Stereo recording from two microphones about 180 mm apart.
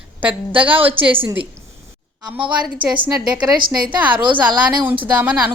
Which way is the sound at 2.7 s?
25° right (ahead or behind).